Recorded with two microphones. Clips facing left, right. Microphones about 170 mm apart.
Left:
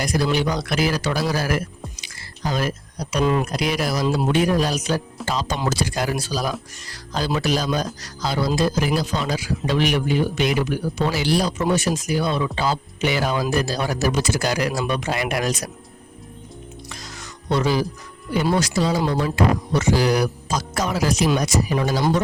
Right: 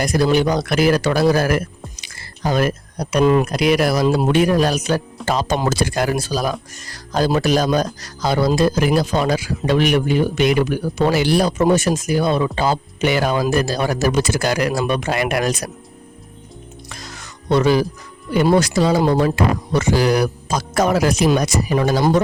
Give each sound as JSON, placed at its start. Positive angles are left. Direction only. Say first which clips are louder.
{"t": 0.0, "sound": "speech", "louder": "right 5 dB", "side_deg": -50}
{"t": 16.9, "sound": "music", "louder": "right 1 dB", "side_deg": -60}
{"t": 18.3, "sound": "speech", "louder": "right 5 dB", "side_deg": -55}